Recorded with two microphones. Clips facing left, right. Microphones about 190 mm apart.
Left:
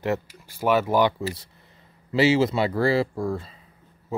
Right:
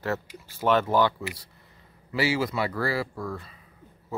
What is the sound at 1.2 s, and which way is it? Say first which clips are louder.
Speech: left 6 dB; 25° left (ahead or behind).